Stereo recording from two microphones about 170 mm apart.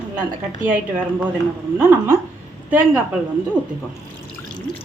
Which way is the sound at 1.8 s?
15° right (ahead or behind).